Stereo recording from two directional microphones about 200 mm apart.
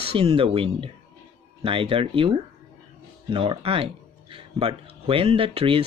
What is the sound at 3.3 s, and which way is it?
Speech, 25° right (ahead or behind).